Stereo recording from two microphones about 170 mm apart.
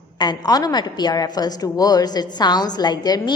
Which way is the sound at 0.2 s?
25° left (ahead or behind).